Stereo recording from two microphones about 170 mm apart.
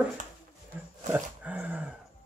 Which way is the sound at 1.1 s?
10° right (ahead or behind).